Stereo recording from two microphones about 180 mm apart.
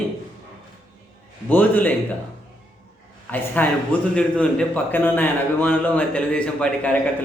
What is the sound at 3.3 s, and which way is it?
A man's voice, 10° left (ahead or behind).